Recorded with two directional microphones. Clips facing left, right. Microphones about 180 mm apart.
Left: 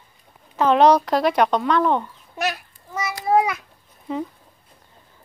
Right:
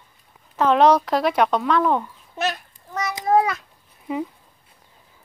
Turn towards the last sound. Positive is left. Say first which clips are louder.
# right 1 dB
turn(degrees=-10)  # may be behind; listen again after turning